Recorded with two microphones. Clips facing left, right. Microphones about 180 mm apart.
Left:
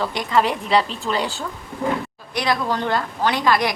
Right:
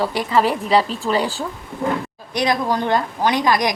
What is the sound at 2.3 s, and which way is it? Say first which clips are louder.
A woman's voice: right 2 dB; 20° right (ahead or behind).